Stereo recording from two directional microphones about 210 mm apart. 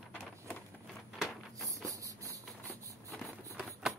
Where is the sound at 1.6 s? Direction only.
15° right (ahead or behind).